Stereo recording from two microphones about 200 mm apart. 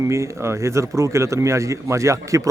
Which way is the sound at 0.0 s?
15° right (ahead or behind).